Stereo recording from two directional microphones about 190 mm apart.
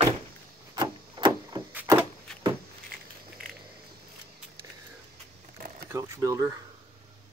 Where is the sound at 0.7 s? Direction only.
25° right (ahead or behind).